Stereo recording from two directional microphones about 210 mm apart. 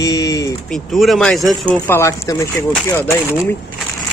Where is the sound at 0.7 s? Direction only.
Centre (ahead or behind).